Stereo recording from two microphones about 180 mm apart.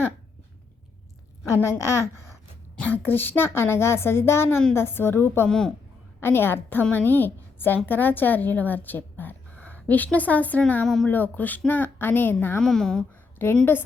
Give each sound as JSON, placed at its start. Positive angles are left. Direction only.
{"t": 1.5, "sound": "a woman's voice", "side_deg": 15}